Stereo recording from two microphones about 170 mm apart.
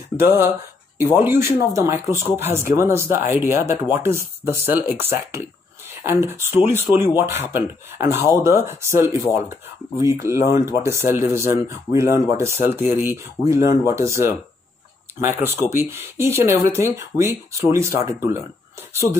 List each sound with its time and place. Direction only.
0.2 s speech: 15° right (ahead or behind)